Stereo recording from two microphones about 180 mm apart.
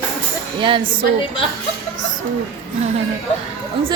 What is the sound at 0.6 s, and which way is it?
Speech, 30° right (ahead or behind).